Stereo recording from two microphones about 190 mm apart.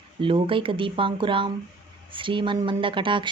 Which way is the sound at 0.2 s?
25° right (ahead or behind).